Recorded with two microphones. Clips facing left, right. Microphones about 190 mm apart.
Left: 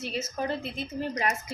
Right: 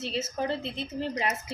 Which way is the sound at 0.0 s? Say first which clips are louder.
Right 1 dB; 25° right (ahead or behind).